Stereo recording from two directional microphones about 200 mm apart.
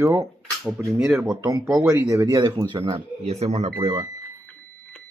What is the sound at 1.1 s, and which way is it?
Speech, 5° right (ahead or behind).